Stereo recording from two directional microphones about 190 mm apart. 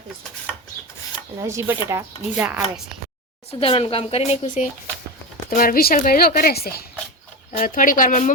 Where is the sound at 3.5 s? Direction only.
30° left (ahead or behind).